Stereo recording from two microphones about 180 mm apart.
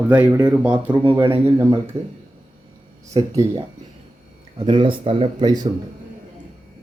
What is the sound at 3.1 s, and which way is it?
Speech, 25° right (ahead or behind).